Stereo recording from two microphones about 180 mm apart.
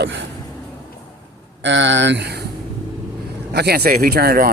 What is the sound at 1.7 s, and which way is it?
Speech, 90° right.